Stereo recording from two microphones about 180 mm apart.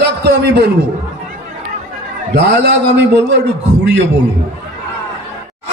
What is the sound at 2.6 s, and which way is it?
Speech, 70° right (ahead or behind).